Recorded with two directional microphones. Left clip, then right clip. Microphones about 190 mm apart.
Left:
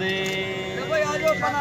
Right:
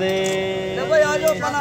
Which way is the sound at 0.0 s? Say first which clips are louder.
Right 5 dB; 50° right (ahead or behind).